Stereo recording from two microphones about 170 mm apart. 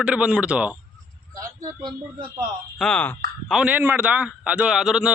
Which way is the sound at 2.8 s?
5° left (ahead or behind).